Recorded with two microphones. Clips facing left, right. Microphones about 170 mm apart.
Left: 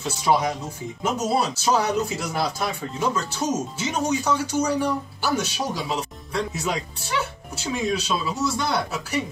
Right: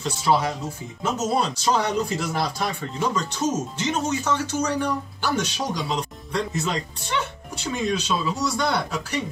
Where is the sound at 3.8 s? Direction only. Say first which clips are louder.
Even; 10° left (ahead or behind).